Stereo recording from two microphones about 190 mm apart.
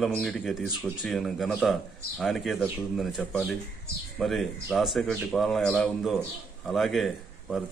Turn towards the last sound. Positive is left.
turn(degrees=0)  # may be behind; listen again after turning